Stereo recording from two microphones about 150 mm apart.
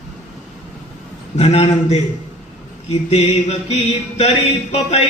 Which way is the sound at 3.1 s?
45° left (ahead or behind).